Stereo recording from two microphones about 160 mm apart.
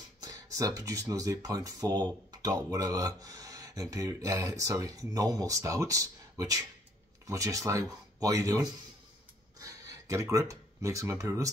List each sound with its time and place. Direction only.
0.2 s speech: 20° right (ahead or behind)